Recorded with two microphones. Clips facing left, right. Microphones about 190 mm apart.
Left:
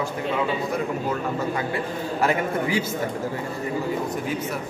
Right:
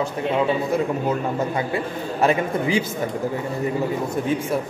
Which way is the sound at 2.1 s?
20° right (ahead or behind).